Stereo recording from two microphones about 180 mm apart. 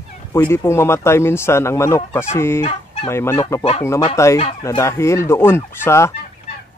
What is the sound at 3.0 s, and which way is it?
Speech, 15° left (ahead or behind).